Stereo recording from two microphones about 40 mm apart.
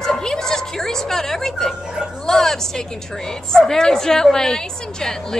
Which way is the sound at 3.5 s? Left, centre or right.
Centre.